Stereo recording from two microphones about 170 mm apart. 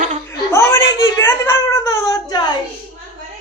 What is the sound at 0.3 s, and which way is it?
Whimper, 15° left (ahead or behind).